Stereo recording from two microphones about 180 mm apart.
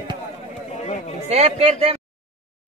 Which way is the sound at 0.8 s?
35° left (ahead or behind).